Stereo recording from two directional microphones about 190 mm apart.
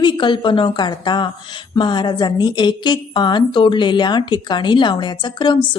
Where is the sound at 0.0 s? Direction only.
25° left (ahead or behind).